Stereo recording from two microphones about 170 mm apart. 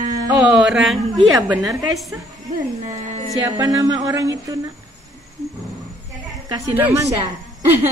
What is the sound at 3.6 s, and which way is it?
Speech, 20° right (ahead or behind).